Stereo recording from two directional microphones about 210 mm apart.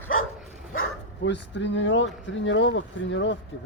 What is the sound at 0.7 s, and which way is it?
Speech, 65° left (ahead or behind).